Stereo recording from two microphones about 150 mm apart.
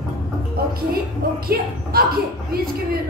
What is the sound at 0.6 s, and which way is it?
Music, 90° right.